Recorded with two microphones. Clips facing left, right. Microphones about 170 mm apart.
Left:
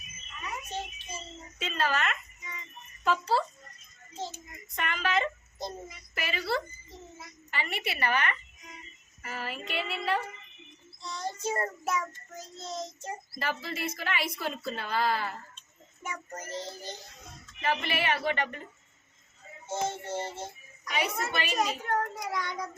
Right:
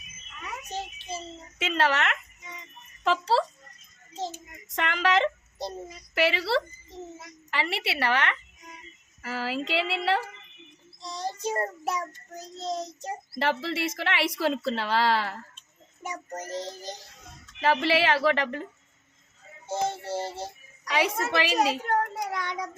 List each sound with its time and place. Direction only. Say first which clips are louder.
1.5 s a woman's voice: right 5 dB; 85° right
4.7 s a woman's voice: right 5 dB; 90° right
5.5 s child singing: right 3 dB; 35° right (ahead or behind)
6.1 s a woman's voice: right 7 dB; 85° right
11.0 s child singing: right 2 dB; 35° right (ahead or behind)
13.4 s a woman's voice: right 7 dB; 80° right
16.0 s child singing: right 4 dB; 40° right (ahead or behind)
17.6 s a woman's voice: right 7 dB; 90° right
19.6 s child singing: right 3 dB; 35° right (ahead or behind)
20.8 s a woman's voice: right 5 dB; 90° right